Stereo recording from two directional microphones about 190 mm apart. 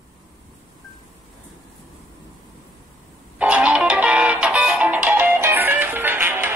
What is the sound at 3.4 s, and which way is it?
Music, 5° right (ahead or behind).